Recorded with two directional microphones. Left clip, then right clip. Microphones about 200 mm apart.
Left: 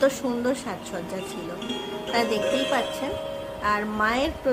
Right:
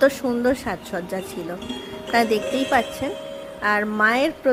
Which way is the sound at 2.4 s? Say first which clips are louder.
Even; centre (ahead or behind).